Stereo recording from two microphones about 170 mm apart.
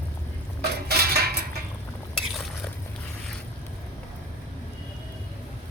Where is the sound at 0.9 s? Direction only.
65° right (ahead or behind).